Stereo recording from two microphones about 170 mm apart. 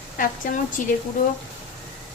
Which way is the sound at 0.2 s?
55° left (ahead or behind).